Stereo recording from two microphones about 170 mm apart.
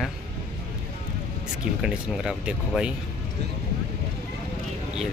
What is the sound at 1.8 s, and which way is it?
Speech, 5° right (ahead or behind).